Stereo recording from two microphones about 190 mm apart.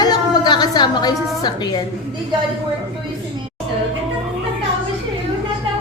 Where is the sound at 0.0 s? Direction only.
20° left (ahead or behind).